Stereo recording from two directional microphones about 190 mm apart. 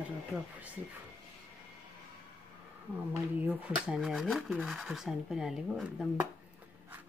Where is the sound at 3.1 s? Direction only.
5° right (ahead or behind).